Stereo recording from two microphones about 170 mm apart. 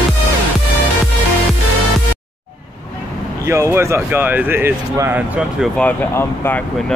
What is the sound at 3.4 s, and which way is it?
Speech, 15° right (ahead or behind).